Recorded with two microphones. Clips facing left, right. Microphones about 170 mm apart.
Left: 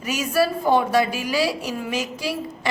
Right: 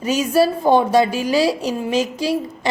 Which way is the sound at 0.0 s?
25° right (ahead or behind).